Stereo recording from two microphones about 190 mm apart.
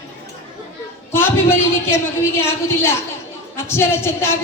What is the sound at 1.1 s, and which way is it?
A woman's voice, 10° left (ahead or behind).